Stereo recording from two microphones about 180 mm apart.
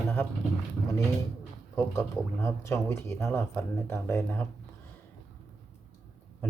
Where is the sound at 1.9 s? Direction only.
15° left (ahead or behind).